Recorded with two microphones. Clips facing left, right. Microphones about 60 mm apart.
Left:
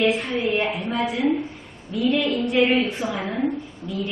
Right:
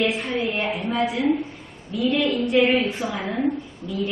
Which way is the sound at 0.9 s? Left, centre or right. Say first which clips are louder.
Even; centre.